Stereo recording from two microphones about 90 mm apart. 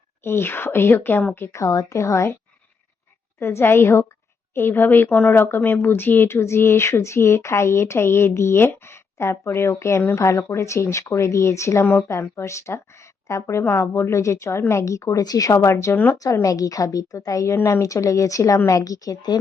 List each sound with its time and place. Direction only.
0.3 s speech: 25° left (ahead or behind)
1.4 s a woman's voice: 35° left (ahead or behind)
3.4 s a woman's voice: 25° left (ahead or behind); by 19.4 s 45° left (ahead or behind)